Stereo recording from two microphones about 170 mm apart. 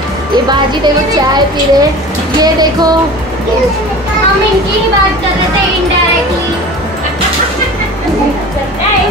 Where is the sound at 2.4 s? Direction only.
25° right (ahead or behind).